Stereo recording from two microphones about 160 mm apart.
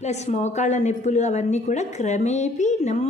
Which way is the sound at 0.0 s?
45° left (ahead or behind).